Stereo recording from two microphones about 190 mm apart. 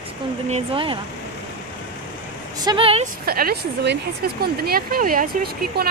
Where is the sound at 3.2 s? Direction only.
50° right (ahead or behind).